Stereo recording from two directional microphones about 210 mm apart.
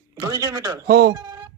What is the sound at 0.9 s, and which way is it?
Speech, 45° right (ahead or behind).